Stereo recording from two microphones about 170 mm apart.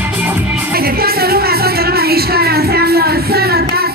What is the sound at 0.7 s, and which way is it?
Music, 65° right (ahead or behind).